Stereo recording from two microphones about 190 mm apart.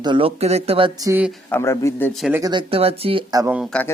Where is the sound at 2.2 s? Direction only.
10° right (ahead or behind).